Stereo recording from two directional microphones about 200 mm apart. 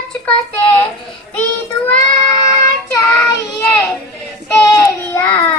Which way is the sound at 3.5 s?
15° left (ahead or behind).